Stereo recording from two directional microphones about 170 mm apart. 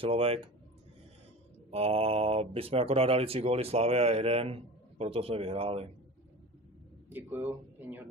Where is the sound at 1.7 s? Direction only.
35° right (ahead or behind).